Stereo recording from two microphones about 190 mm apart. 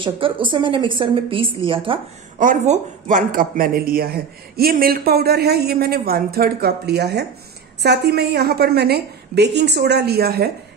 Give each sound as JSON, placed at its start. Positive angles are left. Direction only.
{"t": 0.0, "sound": "a woman's voice", "side_deg": -25}
{"t": 2.3, "sound": "a woman's voice", "side_deg": -45}